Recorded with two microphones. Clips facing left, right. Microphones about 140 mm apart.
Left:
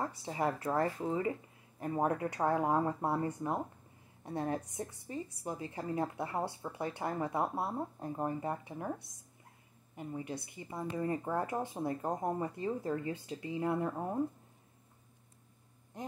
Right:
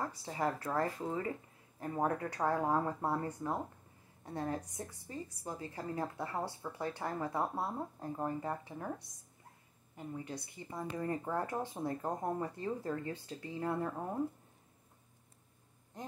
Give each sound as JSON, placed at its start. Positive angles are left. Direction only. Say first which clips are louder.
{"t": 0.2, "sound": "a woman's voice", "louder": "left 2 dB", "side_deg": 15}
{"t": 9.9, "sound": "speech", "louder": "left 2 dB", "side_deg": 15}
{"t": 10.3, "sound": "speech", "louder": "left 2 dB", "side_deg": 5}